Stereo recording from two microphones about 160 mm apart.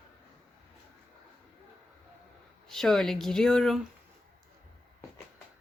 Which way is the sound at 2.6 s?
Centre (ahead or behind).